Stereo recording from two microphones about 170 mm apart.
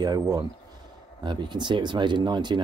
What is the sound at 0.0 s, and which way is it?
Speech, 25° right (ahead or behind).